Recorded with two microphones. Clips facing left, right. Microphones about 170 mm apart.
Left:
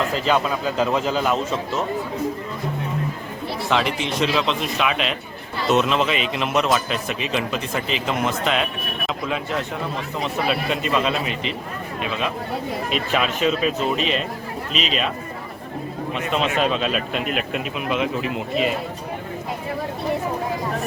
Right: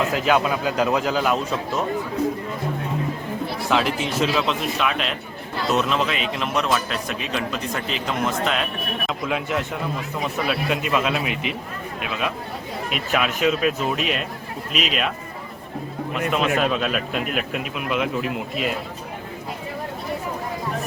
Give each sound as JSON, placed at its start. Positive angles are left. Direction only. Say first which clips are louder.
{"t": 0.1, "sound": "a man's voice", "louder": "right 1 dB", "side_deg": -5}
{"t": 3.7, "sound": "a man's voice", "louder": "even", "side_deg": 0}
{"t": 12.9, "sound": "a man's voice", "louder": "even", "side_deg": -5}
{"t": 16.3, "sound": "a man's voice", "louder": "even", "side_deg": -5}